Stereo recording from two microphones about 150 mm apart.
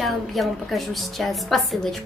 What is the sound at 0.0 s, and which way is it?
A woman's voice, centre (ahead or behind).